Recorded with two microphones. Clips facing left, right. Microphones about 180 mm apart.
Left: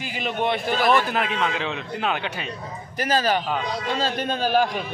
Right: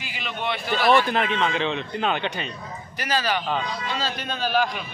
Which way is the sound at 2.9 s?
45° left (ahead or behind).